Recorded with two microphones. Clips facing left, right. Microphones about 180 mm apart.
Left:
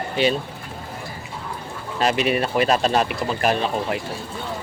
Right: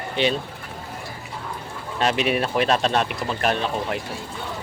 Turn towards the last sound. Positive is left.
turn(degrees=5)  # may be behind; listen again after turning